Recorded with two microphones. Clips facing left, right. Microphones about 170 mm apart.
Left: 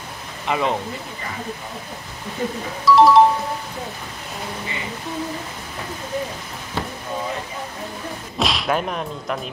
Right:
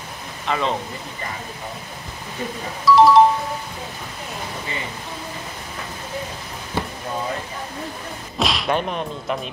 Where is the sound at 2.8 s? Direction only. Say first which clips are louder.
Even; centre (ahead or behind).